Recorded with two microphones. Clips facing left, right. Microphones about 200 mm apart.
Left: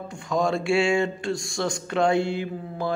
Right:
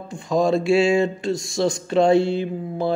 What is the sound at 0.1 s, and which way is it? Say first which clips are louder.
Speech: right 5 dB; 25° right (ahead or behind).